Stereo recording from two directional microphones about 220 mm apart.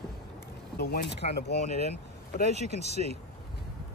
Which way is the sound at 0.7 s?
45° left (ahead or behind).